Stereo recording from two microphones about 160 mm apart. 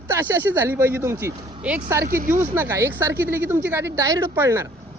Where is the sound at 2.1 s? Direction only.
60° right (ahead or behind).